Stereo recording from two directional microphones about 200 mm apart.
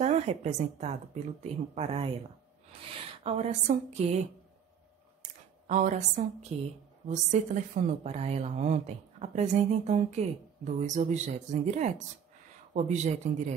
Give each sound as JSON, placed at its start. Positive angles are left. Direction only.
{"t": 0.0, "sound": "a woman's voice", "side_deg": -35}
{"t": 5.7, "sound": "a woman's voice", "side_deg": -40}